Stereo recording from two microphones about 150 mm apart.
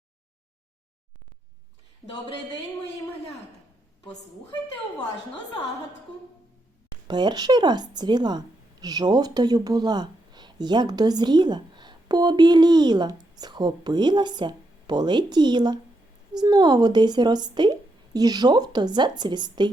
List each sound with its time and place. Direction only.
7.1 s a woman's voice: 30° right (ahead or behind)